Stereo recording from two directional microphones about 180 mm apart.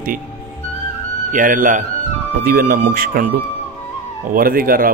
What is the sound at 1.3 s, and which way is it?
A man's voice, 45° right (ahead or behind).